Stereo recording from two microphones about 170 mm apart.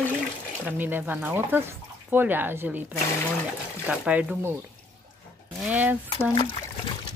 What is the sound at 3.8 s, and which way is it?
Speech, 5° right (ahead or behind).